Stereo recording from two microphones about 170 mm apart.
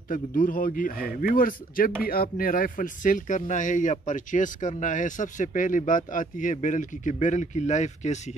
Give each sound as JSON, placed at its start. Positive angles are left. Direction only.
{"t": 0.1, "sound": "speech", "side_deg": 55}